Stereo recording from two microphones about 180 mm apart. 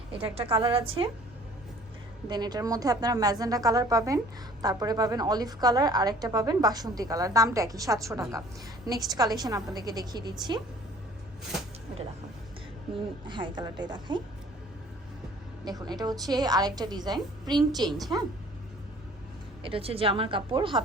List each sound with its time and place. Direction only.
0.2 s a woman's voice: 30° right (ahead or behind)
2.3 s a woman's voice: 25° right (ahead or behind)
12.9 s a woman's voice: 25° right (ahead or behind)
15.9 s a woman's voice: 20° right (ahead or behind)
19.6 s a woman's voice: 30° right (ahead or behind)